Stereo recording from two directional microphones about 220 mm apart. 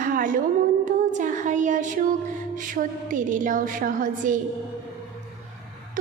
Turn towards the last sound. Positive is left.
turn(degrees=-40)  # may be behind; listen again after turning